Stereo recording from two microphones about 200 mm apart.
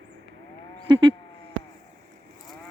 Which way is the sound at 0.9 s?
25° right (ahead or behind).